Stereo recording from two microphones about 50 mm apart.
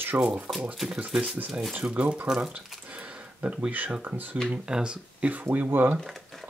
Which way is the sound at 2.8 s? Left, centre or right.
Right.